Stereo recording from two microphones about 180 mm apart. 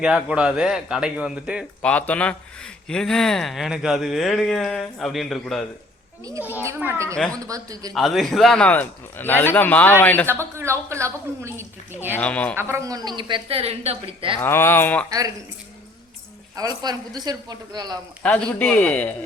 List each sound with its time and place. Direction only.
0.0 s speech: 5° right (ahead or behind)
1.8 s a man's voice: 10° left (ahead or behind)
6.2 s a woman's voice: 15° right (ahead or behind)
7.9 s a man's voice: centre (ahead or behind)
10.2 s a woman's voice: 15° right (ahead or behind)
12.1 s a man's voice: 5° left (ahead or behind)
12.5 s a woman's voice: 15° right (ahead or behind); by 14.3 s 30° right (ahead or behind)
14.4 s a man's voice: 10° left (ahead or behind)
16.6 s a woman's voice: 20° right (ahead or behind)
18.2 s a man's voice: 5° left (ahead or behind)